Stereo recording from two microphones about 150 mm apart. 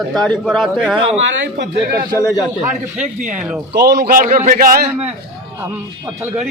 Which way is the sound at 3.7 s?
90° right.